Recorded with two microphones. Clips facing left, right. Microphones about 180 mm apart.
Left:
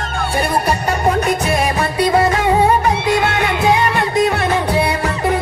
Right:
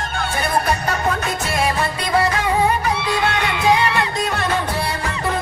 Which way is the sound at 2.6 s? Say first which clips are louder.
Left 5 dB; 50° left (ahead or behind).